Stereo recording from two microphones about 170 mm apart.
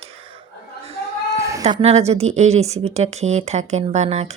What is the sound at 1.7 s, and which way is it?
Speech, 35° right (ahead or behind).